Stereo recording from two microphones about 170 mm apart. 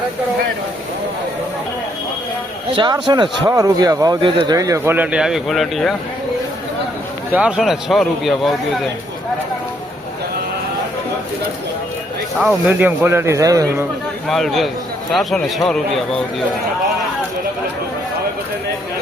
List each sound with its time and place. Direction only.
2.7 s speech: 25° right (ahead or behind); by 5.9 s centre (ahead or behind)
7.3 s a man's voice: 5° right (ahead or behind)
12.4 s speech: 10° right (ahead or behind)
14.3 s a man's voice: centre (ahead or behind)